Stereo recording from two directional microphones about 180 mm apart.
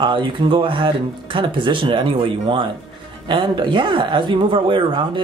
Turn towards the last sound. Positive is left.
turn(degrees=-30)  # may be behind; listen again after turning